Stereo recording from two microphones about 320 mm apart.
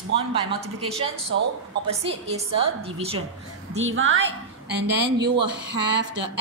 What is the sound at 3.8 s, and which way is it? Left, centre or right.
Speech, right.